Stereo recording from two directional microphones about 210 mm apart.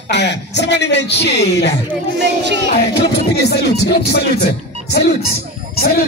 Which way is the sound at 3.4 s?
50° left (ahead or behind).